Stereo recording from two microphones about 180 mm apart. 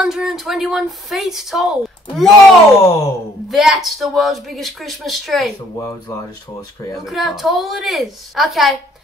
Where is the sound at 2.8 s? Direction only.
20° left (ahead or behind).